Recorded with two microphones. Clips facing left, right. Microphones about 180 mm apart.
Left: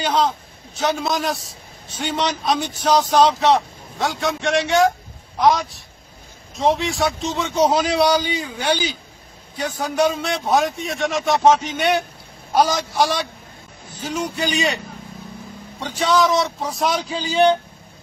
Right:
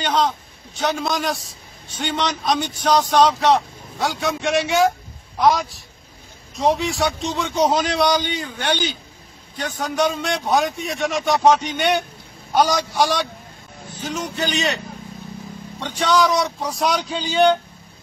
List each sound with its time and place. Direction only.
0.0 s a man's voice: 5° left (ahead or behind)
15.8 s speech: 5° left (ahead or behind)